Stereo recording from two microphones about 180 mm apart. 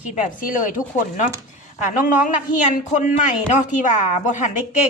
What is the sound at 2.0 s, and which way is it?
Speech, 45° left (ahead or behind).